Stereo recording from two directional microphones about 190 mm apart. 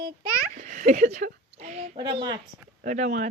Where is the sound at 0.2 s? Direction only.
40° right (ahead or behind).